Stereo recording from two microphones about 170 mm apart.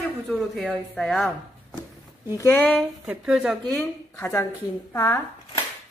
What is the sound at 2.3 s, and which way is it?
Speech, 15° left (ahead or behind).